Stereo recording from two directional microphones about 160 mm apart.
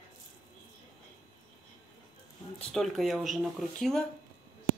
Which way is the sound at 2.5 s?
Centre (ahead or behind).